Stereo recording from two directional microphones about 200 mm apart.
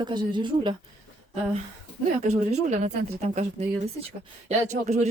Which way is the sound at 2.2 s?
35° right (ahead or behind).